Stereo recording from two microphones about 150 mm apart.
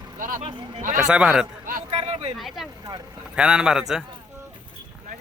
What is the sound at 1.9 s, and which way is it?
Speech, 45° right (ahead or behind).